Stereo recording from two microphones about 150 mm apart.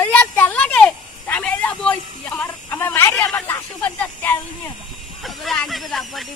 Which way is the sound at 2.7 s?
15° left (ahead or behind).